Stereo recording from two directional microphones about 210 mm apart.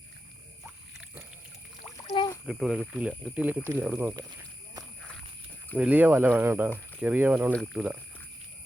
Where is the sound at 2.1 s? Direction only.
20° left (ahead or behind).